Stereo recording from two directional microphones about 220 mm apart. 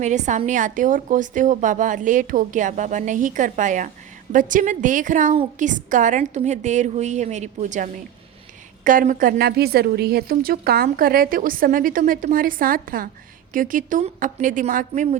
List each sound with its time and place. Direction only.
0.0 s a woman's voice: 35° right (ahead or behind)